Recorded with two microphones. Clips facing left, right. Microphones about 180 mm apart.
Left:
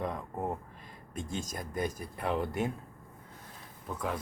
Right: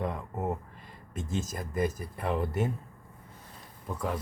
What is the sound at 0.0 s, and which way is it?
Speech, 5° right (ahead or behind).